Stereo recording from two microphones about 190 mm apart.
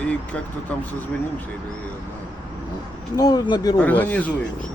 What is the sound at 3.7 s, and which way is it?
Speech, 10° left (ahead or behind).